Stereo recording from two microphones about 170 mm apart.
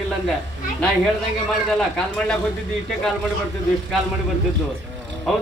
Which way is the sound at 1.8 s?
5° left (ahead or behind).